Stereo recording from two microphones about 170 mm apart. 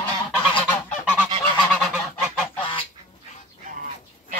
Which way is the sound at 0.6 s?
10° left (ahead or behind).